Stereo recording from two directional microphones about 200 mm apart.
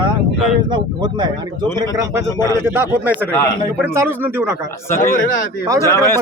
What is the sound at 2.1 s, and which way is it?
A man's voice, 10° right (ahead or behind).